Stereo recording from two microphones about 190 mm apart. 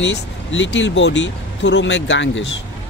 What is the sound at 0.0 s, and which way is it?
Speech, 75° left (ahead or behind).